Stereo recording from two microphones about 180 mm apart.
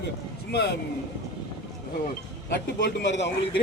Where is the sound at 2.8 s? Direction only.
75° left (ahead or behind).